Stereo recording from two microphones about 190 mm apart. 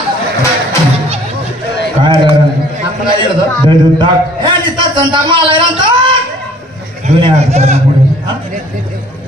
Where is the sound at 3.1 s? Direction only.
25° right (ahead or behind).